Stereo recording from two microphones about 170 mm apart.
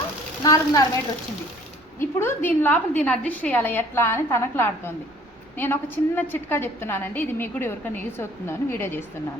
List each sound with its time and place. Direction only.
0.4 s a woman's voice: 20° left (ahead or behind)
2.0 s a woman's voice: 15° left (ahead or behind)